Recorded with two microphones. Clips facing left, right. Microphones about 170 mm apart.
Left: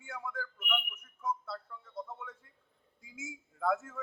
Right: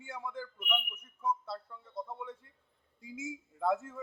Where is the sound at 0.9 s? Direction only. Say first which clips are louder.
Right 2 dB; 30° right (ahead or behind).